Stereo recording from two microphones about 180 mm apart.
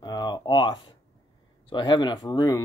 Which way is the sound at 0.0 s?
20° left (ahead or behind).